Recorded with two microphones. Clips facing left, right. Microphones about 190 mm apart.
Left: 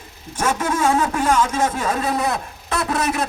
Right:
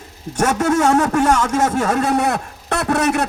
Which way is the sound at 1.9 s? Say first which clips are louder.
Right 4 dB; 75° right (ahead or behind).